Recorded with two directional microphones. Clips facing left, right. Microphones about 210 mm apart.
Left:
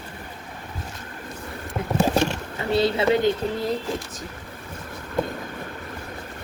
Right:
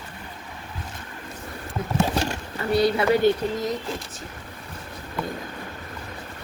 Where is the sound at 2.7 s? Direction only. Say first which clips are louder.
Even; 25° left (ahead or behind).